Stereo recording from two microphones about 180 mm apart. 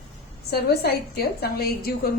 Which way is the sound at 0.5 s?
60° left (ahead or behind).